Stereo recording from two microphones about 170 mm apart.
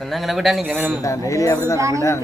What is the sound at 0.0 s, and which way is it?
Speech, centre (ahead or behind).